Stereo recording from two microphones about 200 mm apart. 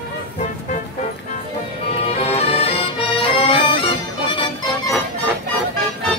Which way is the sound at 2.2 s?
30° left (ahead or behind).